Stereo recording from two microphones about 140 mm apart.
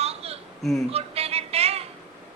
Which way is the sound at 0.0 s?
45° right (ahead or behind).